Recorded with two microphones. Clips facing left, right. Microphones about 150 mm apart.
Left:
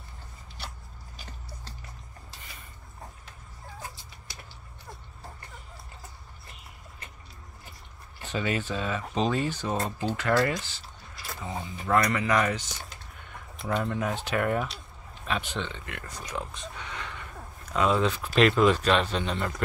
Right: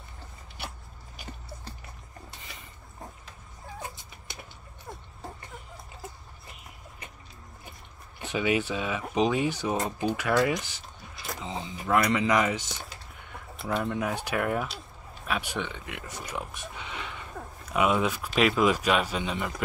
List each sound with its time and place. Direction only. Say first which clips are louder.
3.8 s cat: right 2 dB; 20° right (ahead or behind)
8.2 s speech: right 3 dB; 10° right (ahead or behind)
11.3 s a sound: left 1 dB; 20° right (ahead or behind)
11.8 s speech: right 1 dB; 10° right (ahead or behind)
13.6 s speech: even; 5° right (ahead or behind)